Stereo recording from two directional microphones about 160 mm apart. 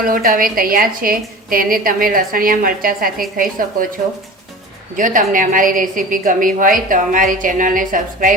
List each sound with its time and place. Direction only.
0.0 s a woman's voice: 60° right (ahead or behind)
4.9 s a woman's voice: 55° right (ahead or behind)